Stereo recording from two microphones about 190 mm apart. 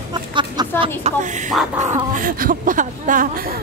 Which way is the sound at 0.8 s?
35° right (ahead or behind).